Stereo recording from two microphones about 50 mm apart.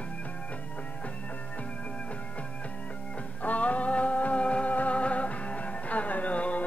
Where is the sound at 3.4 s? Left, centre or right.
Left.